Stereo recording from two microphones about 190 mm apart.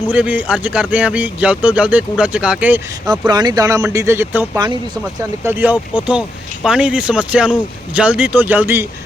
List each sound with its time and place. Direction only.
0.1 s speech: 5° right (ahead or behind)
3.1 s speech: 20° right (ahead or behind)